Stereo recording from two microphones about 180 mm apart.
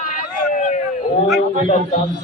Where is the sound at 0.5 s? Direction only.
45° left (ahead or behind).